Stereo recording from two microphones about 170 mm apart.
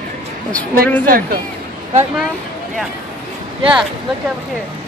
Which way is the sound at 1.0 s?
55° right (ahead or behind).